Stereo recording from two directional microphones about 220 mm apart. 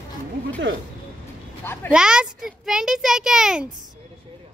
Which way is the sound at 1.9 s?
5° right (ahead or behind).